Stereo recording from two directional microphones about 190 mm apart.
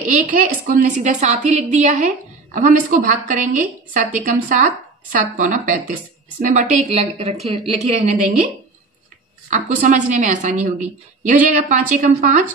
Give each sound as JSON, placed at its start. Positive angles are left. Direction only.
{"t": 0.0, "sound": "a woman's voice", "side_deg": -45}
{"t": 9.5, "sound": "a woman's voice", "side_deg": -40}